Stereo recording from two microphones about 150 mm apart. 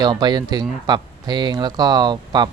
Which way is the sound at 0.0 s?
30° right (ahead or behind).